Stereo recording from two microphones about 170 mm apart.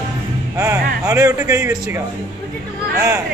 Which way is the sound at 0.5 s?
15° right (ahead or behind).